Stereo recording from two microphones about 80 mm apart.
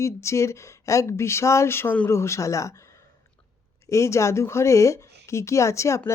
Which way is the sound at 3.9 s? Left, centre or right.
Left.